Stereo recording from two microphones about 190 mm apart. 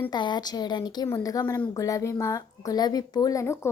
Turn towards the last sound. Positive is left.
turn(degrees=15)  # may be behind; listen again after turning